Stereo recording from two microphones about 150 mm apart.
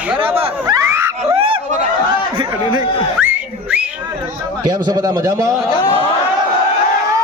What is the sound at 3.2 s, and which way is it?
Whistling, 10° right (ahead or behind).